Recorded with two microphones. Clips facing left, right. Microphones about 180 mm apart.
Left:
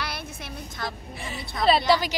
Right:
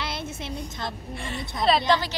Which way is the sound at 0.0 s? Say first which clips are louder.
Right 2 dB; 25° right (ahead or behind).